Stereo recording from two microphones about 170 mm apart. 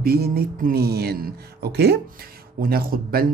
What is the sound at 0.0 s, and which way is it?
A man's voice, 60° right (ahead or behind).